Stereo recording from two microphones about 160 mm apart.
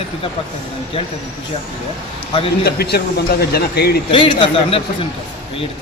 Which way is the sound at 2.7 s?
90° left.